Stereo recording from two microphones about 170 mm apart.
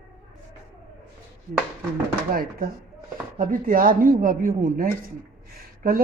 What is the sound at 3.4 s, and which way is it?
Speech, 55° right (ahead or behind).